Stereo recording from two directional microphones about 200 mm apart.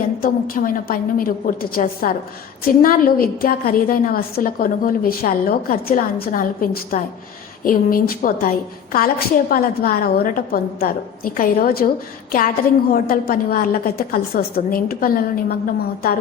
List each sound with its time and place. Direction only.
0.2 s a woman's voice: 45° left (ahead or behind)
12.9 s a woman's voice: 45° left (ahead or behind)